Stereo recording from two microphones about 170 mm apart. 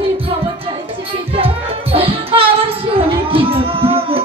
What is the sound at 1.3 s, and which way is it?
Music, 35° right (ahead or behind).